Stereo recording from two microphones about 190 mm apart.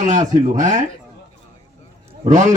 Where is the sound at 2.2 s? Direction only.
40° right (ahead or behind).